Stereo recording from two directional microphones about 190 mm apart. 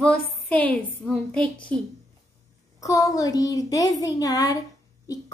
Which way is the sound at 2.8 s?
15° left (ahead or behind).